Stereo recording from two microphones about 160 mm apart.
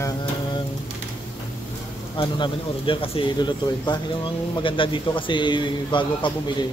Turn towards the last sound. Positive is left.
turn(degrees=30)  # may be behind; listen again after turning